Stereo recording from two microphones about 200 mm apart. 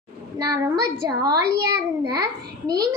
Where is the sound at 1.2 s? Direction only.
20° right (ahead or behind).